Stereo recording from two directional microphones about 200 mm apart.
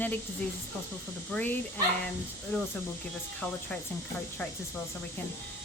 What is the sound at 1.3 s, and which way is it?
Speech, 10° left (ahead or behind).